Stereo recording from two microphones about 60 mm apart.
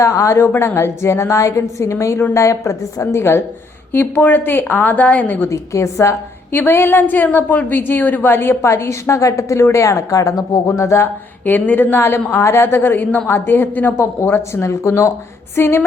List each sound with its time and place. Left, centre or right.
0.0 s speech: left
0.3 s a woman's voice: left
3.0 s a woman's voice: left
3.9 s a woman's voice: left
5.5 s speech: left
6.5 s a woman's voice: left
11.4 s a woman's voice: left
15.5 s a woman's voice: left